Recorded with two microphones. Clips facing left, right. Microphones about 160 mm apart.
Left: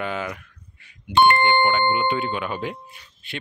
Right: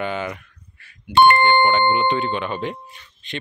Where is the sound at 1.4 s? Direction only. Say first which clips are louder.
Right 3 dB; 10° left (ahead or behind).